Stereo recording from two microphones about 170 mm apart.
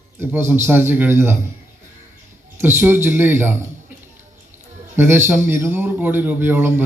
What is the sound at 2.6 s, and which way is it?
Speech, 15° right (ahead or behind).